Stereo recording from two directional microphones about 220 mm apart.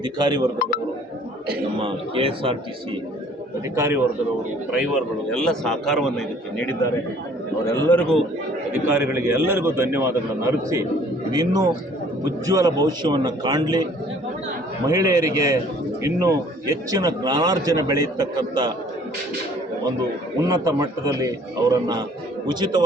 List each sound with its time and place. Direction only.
0.0 s a man's voice: 20° right (ahead or behind)
1.8 s a man's voice: 25° right (ahead or behind)
3.8 s a man's voice: 15° right (ahead or behind)
5.3 s a man's voice: 5° left (ahead or behind)
8.7 s a man's voice: 10° right (ahead or behind)
11.3 s a man's voice: 20° right (ahead or behind)
14.8 s a man's voice: 15° right (ahead or behind)
20.4 s a man's voice: 15° right (ahead or behind)